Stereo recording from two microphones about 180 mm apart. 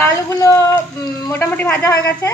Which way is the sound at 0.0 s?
15° left (ahead or behind).